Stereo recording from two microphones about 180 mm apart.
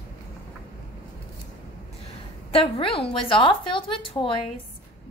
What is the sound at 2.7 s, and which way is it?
A woman's voice, 30° left (ahead or behind).